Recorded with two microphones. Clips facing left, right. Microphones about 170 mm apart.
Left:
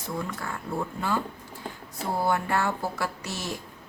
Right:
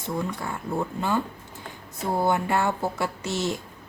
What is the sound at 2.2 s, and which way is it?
A woman's voice, 20° right (ahead or behind).